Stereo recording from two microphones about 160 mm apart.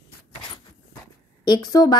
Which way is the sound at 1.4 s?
25° left (ahead or behind).